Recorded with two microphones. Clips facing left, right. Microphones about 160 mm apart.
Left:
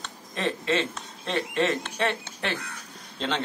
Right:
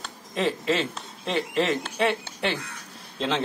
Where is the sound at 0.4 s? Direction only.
Centre (ahead or behind).